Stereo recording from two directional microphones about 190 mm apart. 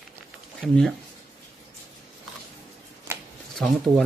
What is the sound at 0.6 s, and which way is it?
Speech, 5° left (ahead or behind).